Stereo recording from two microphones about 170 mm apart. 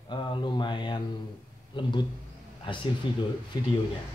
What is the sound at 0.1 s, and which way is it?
Speech, 25° left (ahead or behind).